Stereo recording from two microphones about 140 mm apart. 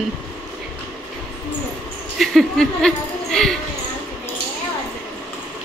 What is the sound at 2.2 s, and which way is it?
Speech, 5° left (ahead or behind).